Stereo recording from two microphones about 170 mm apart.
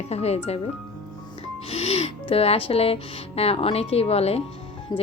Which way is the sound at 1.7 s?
40° left (ahead or behind).